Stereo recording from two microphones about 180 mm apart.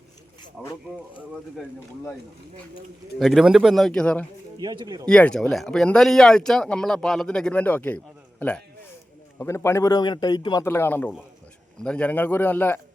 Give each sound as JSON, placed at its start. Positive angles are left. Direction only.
{"t": 0.6, "sound": "speech", "side_deg": -5}
{"t": 3.2, "sound": "speech", "side_deg": 0}
{"t": 4.6, "sound": "speech", "side_deg": -25}
{"t": 5.0, "sound": "a man's voice", "side_deg": 5}